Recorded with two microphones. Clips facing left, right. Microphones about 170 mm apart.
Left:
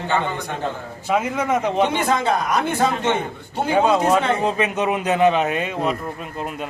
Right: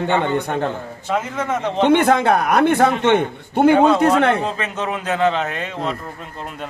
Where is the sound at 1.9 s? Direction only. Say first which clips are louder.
Right 6 dB; 60° right (ahead or behind).